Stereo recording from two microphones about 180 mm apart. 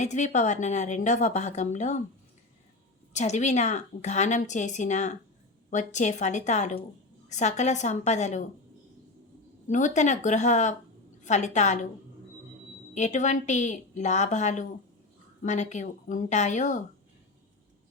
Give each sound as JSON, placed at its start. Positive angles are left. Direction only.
{"t": 0.0, "sound": "a woman's voice", "side_deg": 40}
{"t": 3.1, "sound": "a woman's voice", "side_deg": 40}
{"t": 9.6, "sound": "a woman's voice", "side_deg": 45}
{"t": 12.9, "sound": "a woman's voice", "side_deg": 40}